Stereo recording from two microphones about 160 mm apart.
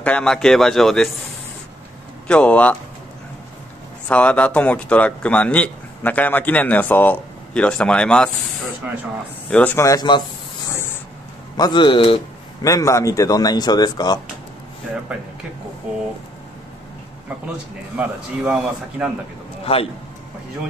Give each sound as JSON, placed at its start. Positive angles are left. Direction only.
{"t": 0.0, "sound": "speech", "side_deg": 5}
{"t": 2.2, "sound": "speech", "side_deg": 10}
{"t": 4.1, "sound": "speech", "side_deg": 10}
{"t": 9.5, "sound": "speech", "side_deg": 10}
{"t": 11.5, "sound": "speech", "side_deg": 25}
{"t": 12.6, "sound": "speech", "side_deg": 20}
{"t": 15.9, "sound": "speech", "side_deg": -5}
{"t": 17.9, "sound": "speech", "side_deg": -5}
{"t": 19.6, "sound": "a man's voice", "side_deg": 35}